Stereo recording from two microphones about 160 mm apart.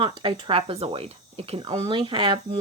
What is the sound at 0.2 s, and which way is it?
Speech, 30° right (ahead or behind).